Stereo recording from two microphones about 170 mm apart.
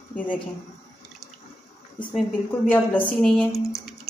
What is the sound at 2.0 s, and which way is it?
A woman's voice, 10° left (ahead or behind).